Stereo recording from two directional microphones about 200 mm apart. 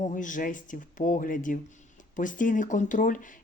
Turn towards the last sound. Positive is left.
turn(degrees=40)  # may be behind; listen again after turning